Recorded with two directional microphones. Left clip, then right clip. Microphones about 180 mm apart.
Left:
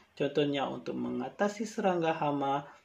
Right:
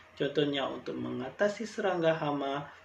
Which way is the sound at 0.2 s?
50° left (ahead or behind).